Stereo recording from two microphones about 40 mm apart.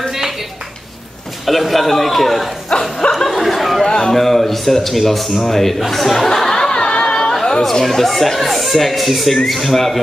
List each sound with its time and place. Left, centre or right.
1.4 s speech: centre
3.1 s a sound: centre
3.4 s chatter: centre
3.8 s speech: centre
5.5 s music: centre; by 7.1 s left
7.1 s chatter: centre
7.8 s speech: centre